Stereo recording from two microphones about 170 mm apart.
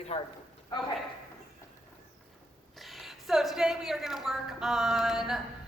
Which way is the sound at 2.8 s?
Centre (ahead or behind).